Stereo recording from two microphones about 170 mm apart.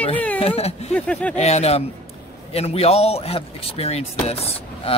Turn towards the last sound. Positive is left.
turn(degrees=35)  # may be behind; listen again after turning